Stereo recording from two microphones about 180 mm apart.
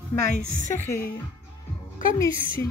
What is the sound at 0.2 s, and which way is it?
Speech, 55° right (ahead or behind).